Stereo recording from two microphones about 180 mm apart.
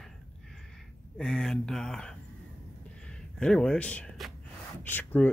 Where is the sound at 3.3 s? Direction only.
5° left (ahead or behind).